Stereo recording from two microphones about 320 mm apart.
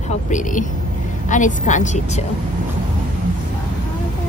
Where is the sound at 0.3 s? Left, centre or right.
Left.